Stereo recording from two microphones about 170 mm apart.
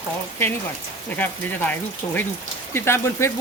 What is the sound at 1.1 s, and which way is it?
Speech, 10° left (ahead or behind).